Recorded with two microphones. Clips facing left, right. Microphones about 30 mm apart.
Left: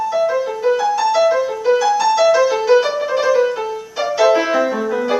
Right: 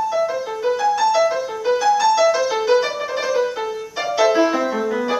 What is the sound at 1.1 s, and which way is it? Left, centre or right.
Music, centre.